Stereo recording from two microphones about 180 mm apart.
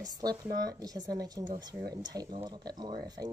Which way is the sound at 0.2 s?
20° right (ahead or behind).